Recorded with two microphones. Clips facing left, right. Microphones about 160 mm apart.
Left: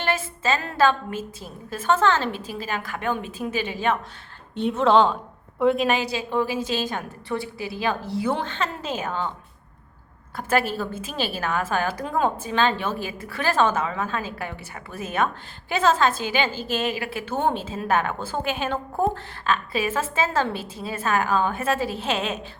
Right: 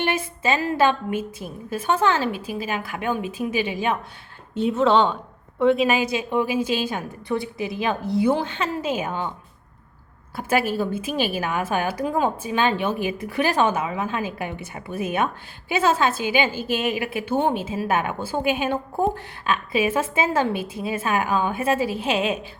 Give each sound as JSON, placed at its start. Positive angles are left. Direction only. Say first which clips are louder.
{"t": 0.0, "sound": "a woman's voice", "louder": "right 2 dB", "side_deg": -15}
{"t": 4.5, "sound": "speech", "louder": "even", "side_deg": 0}
{"t": 6.0, "sound": "a woman's voice", "louder": "right 2 dB", "side_deg": -15}
{"t": 10.3, "sound": "a woman's voice", "louder": "right 1 dB", "side_deg": -10}